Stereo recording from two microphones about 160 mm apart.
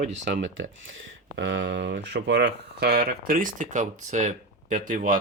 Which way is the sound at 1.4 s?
90° right.